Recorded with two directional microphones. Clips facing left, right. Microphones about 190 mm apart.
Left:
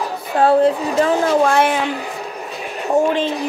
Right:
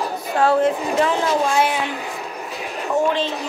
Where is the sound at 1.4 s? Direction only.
60° left (ahead or behind).